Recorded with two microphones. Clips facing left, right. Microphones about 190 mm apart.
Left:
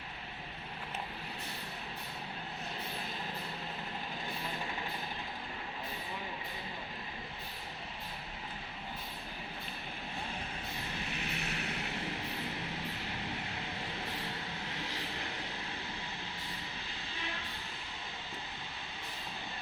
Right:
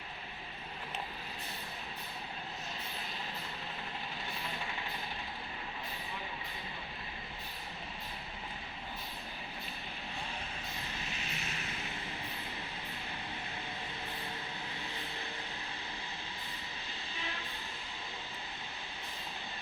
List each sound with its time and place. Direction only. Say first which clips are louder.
11.1 s vehicle: left 3 dB; 60° left (ahead or behind)